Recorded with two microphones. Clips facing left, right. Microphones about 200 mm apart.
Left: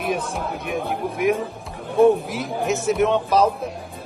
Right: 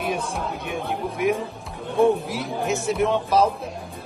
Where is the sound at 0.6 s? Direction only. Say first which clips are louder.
Left 3 dB; 60° left (ahead or behind).